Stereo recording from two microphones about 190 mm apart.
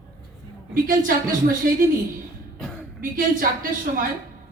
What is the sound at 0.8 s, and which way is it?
A woman's voice, 50° right (ahead or behind).